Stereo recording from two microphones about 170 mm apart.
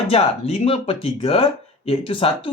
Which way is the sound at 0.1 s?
35° left (ahead or behind).